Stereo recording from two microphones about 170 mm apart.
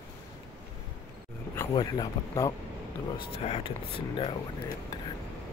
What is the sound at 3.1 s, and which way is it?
Speech, 35° left (ahead or behind).